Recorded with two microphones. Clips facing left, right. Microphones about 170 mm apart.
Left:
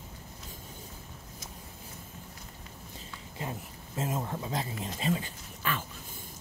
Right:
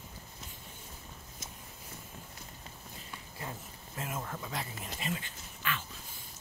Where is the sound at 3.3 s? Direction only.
20° left (ahead or behind); by 5.9 s 40° left (ahead or behind).